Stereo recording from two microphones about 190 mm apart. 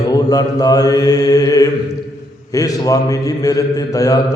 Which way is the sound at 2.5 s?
20° left (ahead or behind).